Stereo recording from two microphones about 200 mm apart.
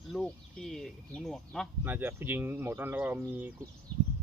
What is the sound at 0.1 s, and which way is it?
Speech, centre (ahead or behind).